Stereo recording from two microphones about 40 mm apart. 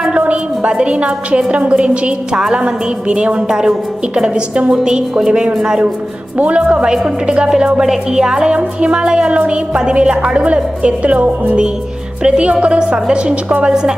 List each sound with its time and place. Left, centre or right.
0.2 s music: right
0.9 s speech: right
2.3 s a woman's voice: centre
4.1 s speech: right
6.3 s speech: right
6.8 s a woman's voice: centre
13.7 s speech: right